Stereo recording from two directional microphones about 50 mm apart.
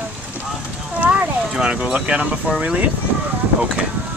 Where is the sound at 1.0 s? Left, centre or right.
Right.